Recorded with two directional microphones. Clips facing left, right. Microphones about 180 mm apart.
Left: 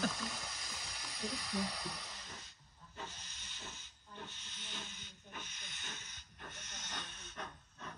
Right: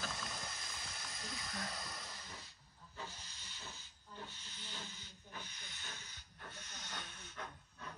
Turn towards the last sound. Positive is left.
turn(degrees=20)  # may be behind; listen again after turning